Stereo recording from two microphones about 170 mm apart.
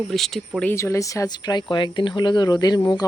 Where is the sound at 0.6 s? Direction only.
15° left (ahead or behind).